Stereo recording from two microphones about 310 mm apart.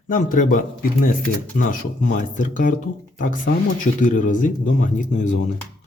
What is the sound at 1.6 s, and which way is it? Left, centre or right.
Speech, left.